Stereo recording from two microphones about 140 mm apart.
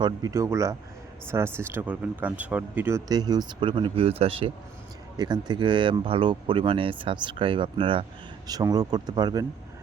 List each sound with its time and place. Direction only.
0.0 s speech: 25° right (ahead or behind)
3.1 s speech: 30° right (ahead or behind)
5.1 s speech: 30° right (ahead or behind)